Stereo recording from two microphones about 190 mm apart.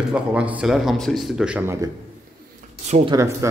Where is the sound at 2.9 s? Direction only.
25° right (ahead or behind).